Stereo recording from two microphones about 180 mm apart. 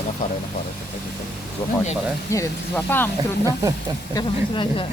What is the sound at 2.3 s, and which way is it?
Speech, 15° left (ahead or behind).